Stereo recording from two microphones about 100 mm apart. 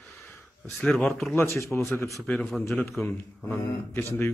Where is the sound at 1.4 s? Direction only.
30° left (ahead or behind).